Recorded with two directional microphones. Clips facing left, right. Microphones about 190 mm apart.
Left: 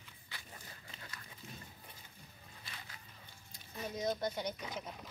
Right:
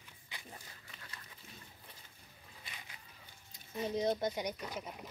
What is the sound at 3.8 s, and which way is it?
Speech, 25° right (ahead or behind).